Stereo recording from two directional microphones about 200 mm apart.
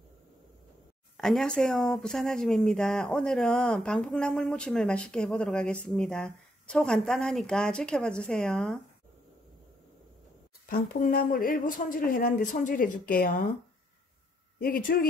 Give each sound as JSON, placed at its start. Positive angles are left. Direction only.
{"t": 1.1, "sound": "speech", "side_deg": 0}
{"t": 10.7, "sound": "speech", "side_deg": 45}
{"t": 14.6, "sound": "speech", "side_deg": 45}